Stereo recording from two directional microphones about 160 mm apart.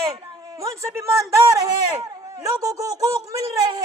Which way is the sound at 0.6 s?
20° right (ahead or behind).